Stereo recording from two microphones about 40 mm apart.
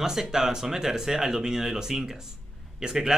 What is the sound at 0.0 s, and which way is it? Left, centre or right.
Speech, centre.